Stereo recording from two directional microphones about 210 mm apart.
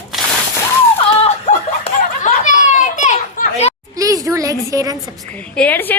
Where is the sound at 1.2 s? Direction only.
30° left (ahead or behind).